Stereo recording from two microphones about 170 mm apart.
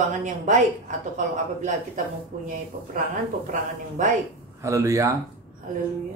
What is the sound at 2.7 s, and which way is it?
Speech, 55° right (ahead or behind).